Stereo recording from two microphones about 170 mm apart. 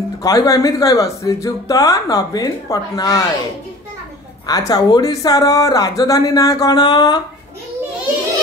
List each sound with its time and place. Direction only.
0.2 s speech: 20° left (ahead or behind)
4.5 s speech: 20° left (ahead or behind)